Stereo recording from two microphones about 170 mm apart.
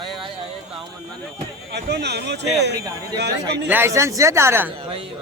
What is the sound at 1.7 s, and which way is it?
Speech, 75° right (ahead or behind).